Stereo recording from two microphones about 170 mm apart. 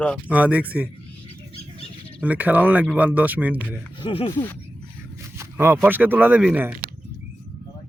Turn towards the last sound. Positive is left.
turn(degrees=-10)  # may be behind; listen again after turning